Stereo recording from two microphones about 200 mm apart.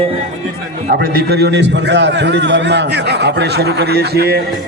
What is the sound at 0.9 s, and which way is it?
A man's voice, 50° right (ahead or behind).